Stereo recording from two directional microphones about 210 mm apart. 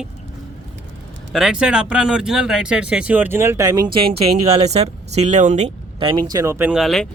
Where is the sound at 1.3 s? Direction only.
5° right (ahead or behind).